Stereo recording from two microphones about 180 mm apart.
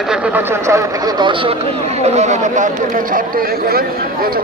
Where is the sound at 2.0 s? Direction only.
40° right (ahead or behind).